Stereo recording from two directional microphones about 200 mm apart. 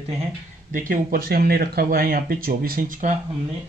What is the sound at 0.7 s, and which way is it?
Speech, 40° right (ahead or behind).